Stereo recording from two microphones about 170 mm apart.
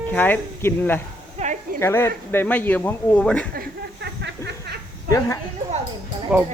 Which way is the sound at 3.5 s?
70° right (ahead or behind).